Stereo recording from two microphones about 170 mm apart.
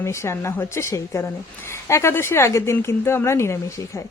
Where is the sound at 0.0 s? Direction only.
15° left (ahead or behind).